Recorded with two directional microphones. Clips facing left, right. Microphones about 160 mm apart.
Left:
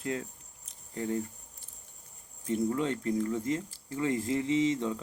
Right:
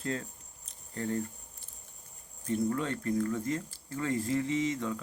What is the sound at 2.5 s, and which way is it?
Speech, 15° left (ahead or behind).